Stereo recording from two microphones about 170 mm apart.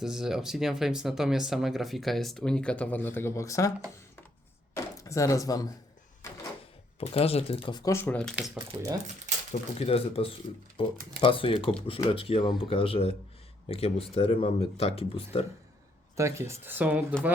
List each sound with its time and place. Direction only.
0.0 s speech: 5° right (ahead or behind); by 3.7 s 20° left (ahead or behind)
4.7 s chopping: 20° left (ahead or behind)
6.2 s door: 15° left (ahead or behind)
7.0 s speech: 35° left (ahead or behind); by 8.4 s 5° left (ahead or behind)
8.5 s speech: 20° right (ahead or behind)
9.5 s speech: 35° left (ahead or behind)
16.1 s speech: 15° right (ahead or behind)